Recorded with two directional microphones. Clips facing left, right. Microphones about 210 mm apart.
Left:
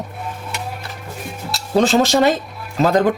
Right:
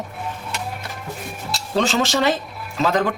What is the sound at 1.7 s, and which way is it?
Speech, 40° left (ahead or behind).